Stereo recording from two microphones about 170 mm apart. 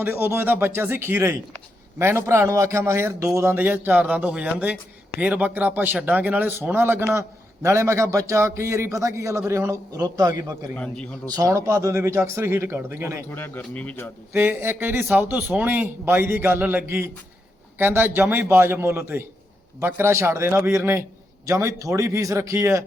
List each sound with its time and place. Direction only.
0.0 s a man's voice: 10° right (ahead or behind)
10.8 s speech: 5° left (ahead or behind)
11.3 s a man's voice: 20° right (ahead or behind)
13.3 s speech: 10° left (ahead or behind)
14.3 s a man's voice: 10° right (ahead or behind)